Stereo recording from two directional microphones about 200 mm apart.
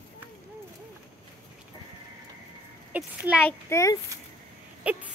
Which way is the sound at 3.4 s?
15° left (ahead or behind).